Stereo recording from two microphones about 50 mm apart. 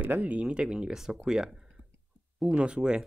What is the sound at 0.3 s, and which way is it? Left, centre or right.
Speech, right.